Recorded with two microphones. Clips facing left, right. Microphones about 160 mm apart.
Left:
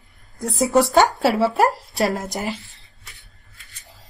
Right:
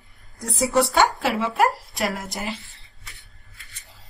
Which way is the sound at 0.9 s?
40° left (ahead or behind).